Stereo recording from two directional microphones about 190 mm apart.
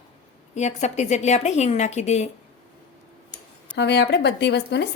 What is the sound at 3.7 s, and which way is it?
A woman's voice, 65° left (ahead or behind).